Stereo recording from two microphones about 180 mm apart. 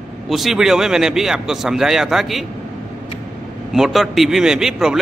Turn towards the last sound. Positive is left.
turn(degrees=0)  # may be behind; listen again after turning